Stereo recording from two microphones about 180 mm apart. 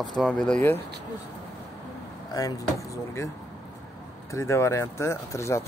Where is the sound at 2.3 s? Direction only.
20° left (ahead or behind).